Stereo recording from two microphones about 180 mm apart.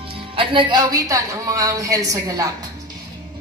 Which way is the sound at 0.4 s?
30° right (ahead or behind).